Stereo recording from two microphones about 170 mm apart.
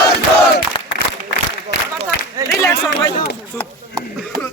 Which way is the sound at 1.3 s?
90° left.